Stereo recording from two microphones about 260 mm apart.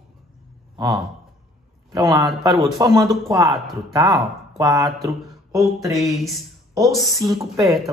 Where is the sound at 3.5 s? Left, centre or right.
Centre.